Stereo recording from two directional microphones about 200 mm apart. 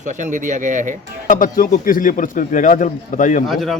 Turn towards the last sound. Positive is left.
turn(degrees=0)  # may be behind; listen again after turning